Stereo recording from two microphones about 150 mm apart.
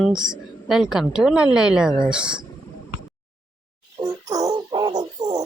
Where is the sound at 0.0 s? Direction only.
5° right (ahead or behind).